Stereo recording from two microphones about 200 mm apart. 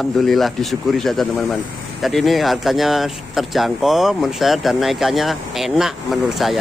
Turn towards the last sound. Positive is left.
turn(degrees=0)  # may be behind; listen again after turning